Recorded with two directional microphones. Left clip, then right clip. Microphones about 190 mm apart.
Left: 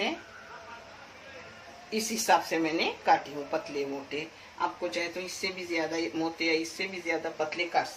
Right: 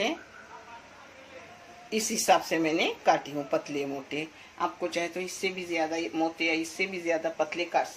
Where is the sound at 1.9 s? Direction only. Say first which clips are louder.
Right 1 dB; 55° right (ahead or behind).